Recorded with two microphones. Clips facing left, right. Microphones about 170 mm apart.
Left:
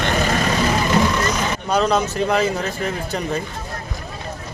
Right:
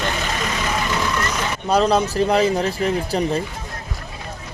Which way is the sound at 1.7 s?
35° right (ahead or behind).